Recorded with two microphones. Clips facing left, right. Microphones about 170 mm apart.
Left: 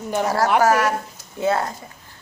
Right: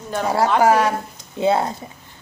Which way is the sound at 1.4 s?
20° right (ahead or behind).